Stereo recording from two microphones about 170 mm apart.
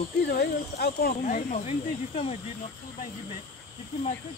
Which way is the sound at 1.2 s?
45° left (ahead or behind).